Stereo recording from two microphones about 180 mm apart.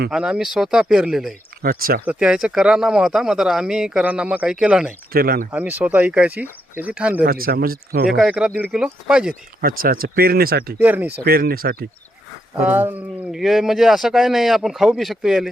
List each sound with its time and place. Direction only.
0.1 s speech: 5° right (ahead or behind)
1.6 s speech: 55° right (ahead or behind)
2.0 s speech: 5° right (ahead or behind)
5.1 s speech: 55° right (ahead or behind)
5.5 s speech: 10° right (ahead or behind)
7.3 s speech: 55° right (ahead or behind)
8.1 s speech: 5° right (ahead or behind)
9.6 s speech: 55° right (ahead or behind)
10.8 s speech: 10° right (ahead or behind)
11.3 s speech: 55° right (ahead or behind)
12.5 s speech: 10° right (ahead or behind)